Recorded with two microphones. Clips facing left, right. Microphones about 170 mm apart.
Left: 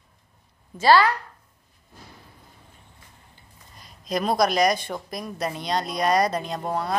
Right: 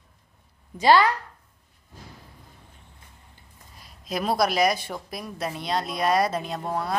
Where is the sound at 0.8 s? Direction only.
20° right (ahead or behind).